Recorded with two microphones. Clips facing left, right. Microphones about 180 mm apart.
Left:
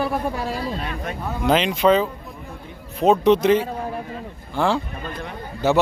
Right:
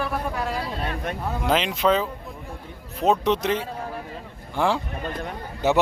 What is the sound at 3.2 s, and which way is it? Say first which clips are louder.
Speech: left 7 dB; centre (ahead or behind).